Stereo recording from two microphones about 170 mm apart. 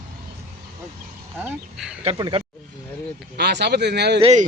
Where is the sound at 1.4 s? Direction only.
5° right (ahead or behind).